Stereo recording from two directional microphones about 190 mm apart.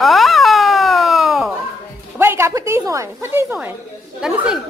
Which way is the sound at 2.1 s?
15° right (ahead or behind).